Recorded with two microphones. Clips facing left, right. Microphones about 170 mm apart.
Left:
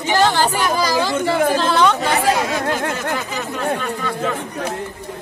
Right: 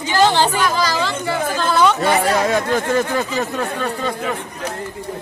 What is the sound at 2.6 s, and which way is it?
Speech, 60° left (ahead or behind).